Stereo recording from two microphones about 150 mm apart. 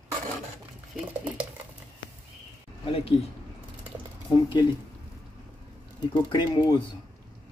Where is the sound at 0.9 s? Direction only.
10° right (ahead or behind).